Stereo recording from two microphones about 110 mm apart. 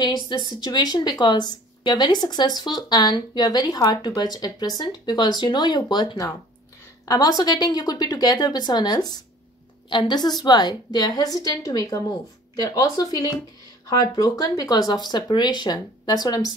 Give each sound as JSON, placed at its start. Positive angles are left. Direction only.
{"t": 0.0, "sound": "speech", "side_deg": 40}